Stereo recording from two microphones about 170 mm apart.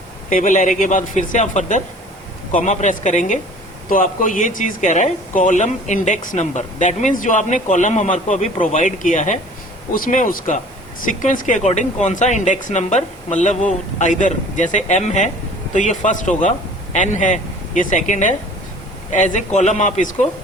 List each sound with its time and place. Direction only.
0.3 s speech: 50° left (ahead or behind)